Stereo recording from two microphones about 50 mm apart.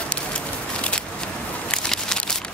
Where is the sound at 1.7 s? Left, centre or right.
Centre.